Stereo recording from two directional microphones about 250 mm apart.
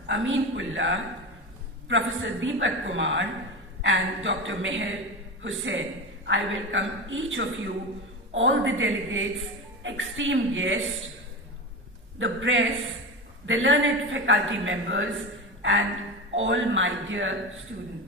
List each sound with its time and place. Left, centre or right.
0.0 s a man's voice: right
12.2 s a man's voice: right